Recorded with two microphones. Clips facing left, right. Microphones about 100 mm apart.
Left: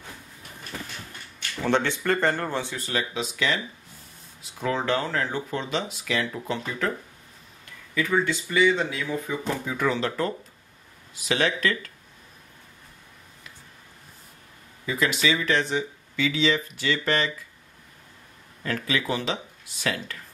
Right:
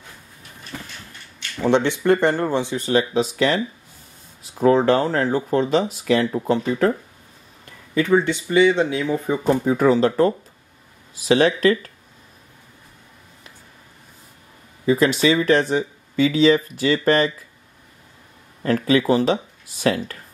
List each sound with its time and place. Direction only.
1.6 s speech: 20° right (ahead or behind)
2.9 s speech: 35° right (ahead or behind)
7.9 s speech: 25° right (ahead or behind)
9.4 s speech: 40° right (ahead or behind)
14.9 s speech: 35° right (ahead or behind)
18.6 s speech: 40° right (ahead or behind)